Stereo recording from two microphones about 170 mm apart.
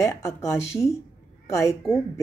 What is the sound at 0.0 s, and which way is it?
Speech, 15° left (ahead or behind).